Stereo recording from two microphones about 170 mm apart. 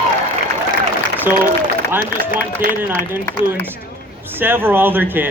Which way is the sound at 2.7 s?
15° right (ahead or behind).